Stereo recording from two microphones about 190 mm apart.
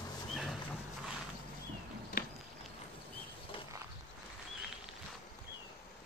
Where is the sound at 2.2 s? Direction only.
50° left (ahead or behind).